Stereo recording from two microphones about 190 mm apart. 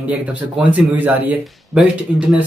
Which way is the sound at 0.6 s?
10° right (ahead or behind).